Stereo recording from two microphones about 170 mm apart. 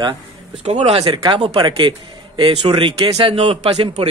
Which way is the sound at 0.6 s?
40° right (ahead or behind).